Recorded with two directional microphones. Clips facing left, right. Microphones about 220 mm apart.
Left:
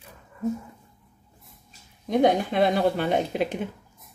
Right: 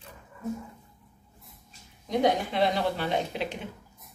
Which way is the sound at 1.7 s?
50° left (ahead or behind).